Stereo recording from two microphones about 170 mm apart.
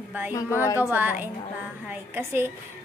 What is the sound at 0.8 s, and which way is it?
Speech, 10° right (ahead or behind).